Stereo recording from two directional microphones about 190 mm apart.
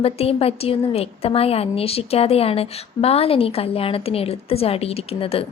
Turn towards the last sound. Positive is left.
turn(degrees=30)  # may be behind; listen again after turning